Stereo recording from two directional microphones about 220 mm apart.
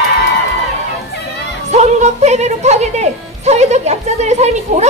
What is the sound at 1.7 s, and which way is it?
A woman's voice, 30° right (ahead or behind).